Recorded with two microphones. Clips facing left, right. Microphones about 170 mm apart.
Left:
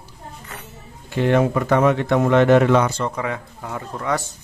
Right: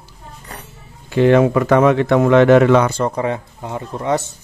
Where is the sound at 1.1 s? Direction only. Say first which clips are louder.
Right 6 dB; 90° right.